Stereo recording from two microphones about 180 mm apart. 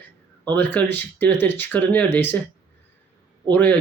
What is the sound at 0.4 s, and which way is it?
Speech, 10° left (ahead or behind).